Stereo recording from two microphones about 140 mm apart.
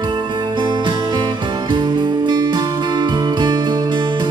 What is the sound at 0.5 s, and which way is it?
Music, 35° right (ahead or behind).